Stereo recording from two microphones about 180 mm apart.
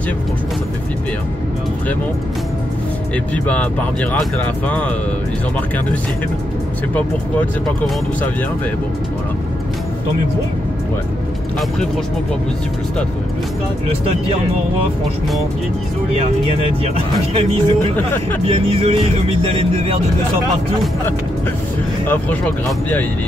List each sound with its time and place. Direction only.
3.4 s speech: 10° left (ahead or behind)
16.1 s speech: 35° right (ahead or behind)
17.9 s speech: 10° left (ahead or behind)
18.5 s speech: 30° right (ahead or behind)
22.0 s speech: 10° left (ahead or behind)